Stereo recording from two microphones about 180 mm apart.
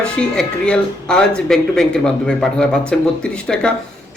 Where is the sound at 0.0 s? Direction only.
5° left (ahead or behind).